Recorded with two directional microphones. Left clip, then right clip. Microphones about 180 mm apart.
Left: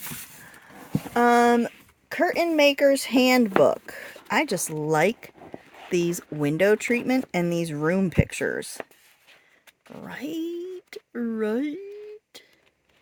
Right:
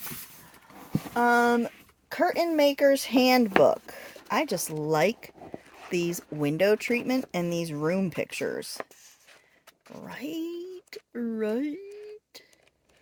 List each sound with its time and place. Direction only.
0.9 s speech: 65° left (ahead or behind); by 8.9 s 35° left (ahead or behind)
10.0 s speech: 30° left (ahead or behind)